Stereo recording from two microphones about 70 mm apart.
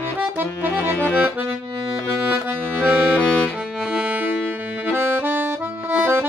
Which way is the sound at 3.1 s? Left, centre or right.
Left.